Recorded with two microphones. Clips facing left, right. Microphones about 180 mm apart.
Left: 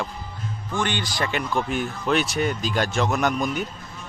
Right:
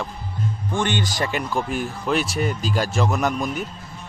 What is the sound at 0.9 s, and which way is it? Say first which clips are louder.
Speech: right 2 dB; 45° right (ahead or behind).